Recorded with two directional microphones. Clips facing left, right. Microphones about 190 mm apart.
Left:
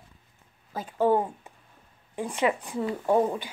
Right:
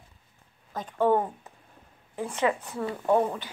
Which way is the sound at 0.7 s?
10° left (ahead or behind).